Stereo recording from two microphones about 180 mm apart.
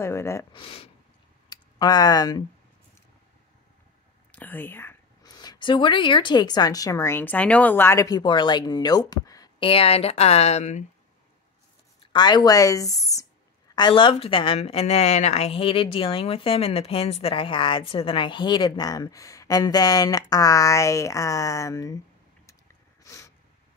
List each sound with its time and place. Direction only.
0.0 s speech: 15° left (ahead or behind)
0.5 s speech: 30° left (ahead or behind)
4.3 s a woman's voice: 10° left (ahead or behind); by 10.9 s 40° left (ahead or behind)
12.1 s a woman's voice: 25° left (ahead or behind)
23.0 s a sound: 15° left (ahead or behind)